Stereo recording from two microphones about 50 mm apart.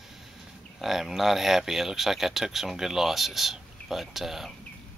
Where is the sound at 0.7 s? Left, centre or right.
Centre.